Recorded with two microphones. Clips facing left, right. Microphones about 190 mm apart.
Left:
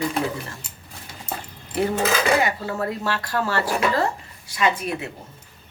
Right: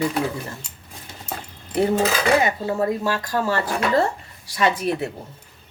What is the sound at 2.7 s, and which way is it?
Speech, 15° right (ahead or behind).